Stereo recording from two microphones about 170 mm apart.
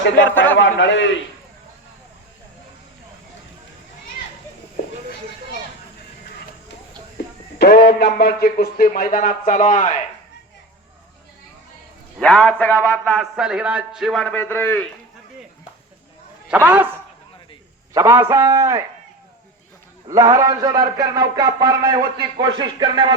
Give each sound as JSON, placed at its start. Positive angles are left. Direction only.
{"t": 0.3, "sound": "a man's voice", "side_deg": 10}
{"t": 0.6, "sound": "a man's voice", "side_deg": 90}
{"t": 7.6, "sound": "a man's voice", "side_deg": 65}
{"t": 12.2, "sound": "a man's voice", "side_deg": 5}
{"t": 13.3, "sound": "a man's voice", "side_deg": -5}
{"t": 16.5, "sound": "a man's voice", "side_deg": -10}
{"t": 17.9, "sound": "a man's voice", "side_deg": -20}
{"t": 20.1, "sound": "a man's voice", "side_deg": -20}